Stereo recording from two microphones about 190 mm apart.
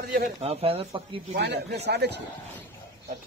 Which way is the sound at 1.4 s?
60° right (ahead or behind).